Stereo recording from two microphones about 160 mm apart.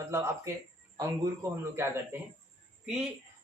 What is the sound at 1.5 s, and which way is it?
Speech, 15° right (ahead or behind).